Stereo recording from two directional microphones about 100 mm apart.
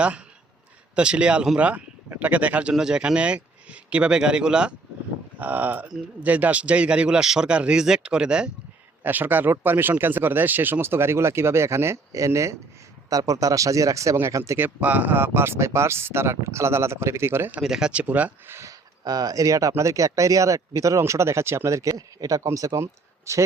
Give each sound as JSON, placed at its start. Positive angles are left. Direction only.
{"t": 0.9, "sound": "speech", "side_deg": -10}
{"t": 14.8, "sound": "speech", "side_deg": -15}
{"t": 17.6, "sound": "speech", "side_deg": -5}